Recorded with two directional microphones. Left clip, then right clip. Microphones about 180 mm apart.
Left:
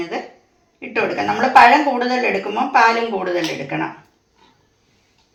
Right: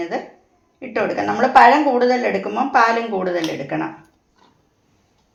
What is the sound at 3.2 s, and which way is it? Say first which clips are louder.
Speech: left 1 dB; 45° right (ahead or behind).